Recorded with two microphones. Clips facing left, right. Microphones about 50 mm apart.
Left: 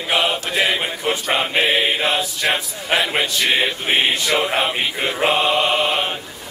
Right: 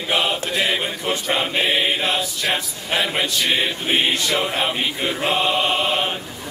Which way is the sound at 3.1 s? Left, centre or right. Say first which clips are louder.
Left 2 dB; centre.